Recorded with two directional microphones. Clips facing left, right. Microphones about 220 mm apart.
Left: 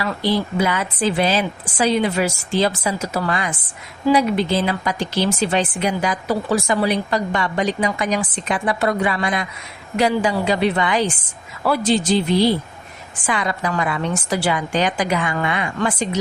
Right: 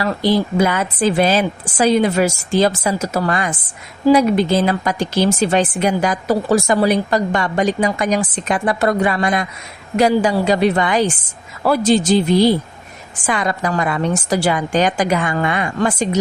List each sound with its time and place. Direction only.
0.0 s a woman's voice: 45° right (ahead or behind)